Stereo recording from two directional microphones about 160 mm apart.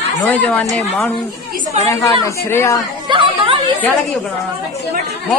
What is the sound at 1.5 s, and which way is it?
Chatter, 50° right (ahead or behind).